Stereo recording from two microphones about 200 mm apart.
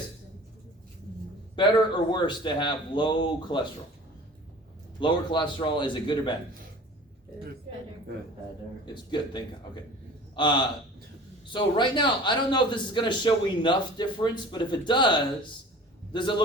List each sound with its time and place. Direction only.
1.5 s a man's voice: 20° left (ahead or behind)
4.9 s a man's voice: 25° left (ahead or behind)
10.3 s a man's voice: 25° left (ahead or behind)